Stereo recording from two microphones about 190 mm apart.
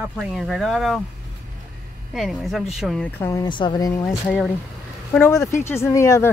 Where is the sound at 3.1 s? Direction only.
15° left (ahead or behind).